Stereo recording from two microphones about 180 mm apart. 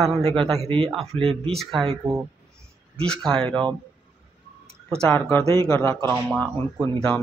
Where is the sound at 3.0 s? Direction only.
5° left (ahead or behind).